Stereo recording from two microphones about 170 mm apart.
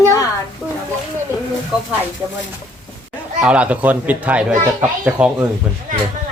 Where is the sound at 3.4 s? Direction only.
5° right (ahead or behind).